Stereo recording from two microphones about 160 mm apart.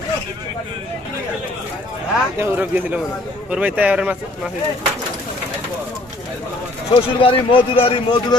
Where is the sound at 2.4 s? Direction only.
10° right (ahead or behind).